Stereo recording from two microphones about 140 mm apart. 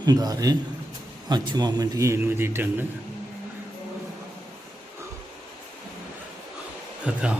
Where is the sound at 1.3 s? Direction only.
30° right (ahead or behind).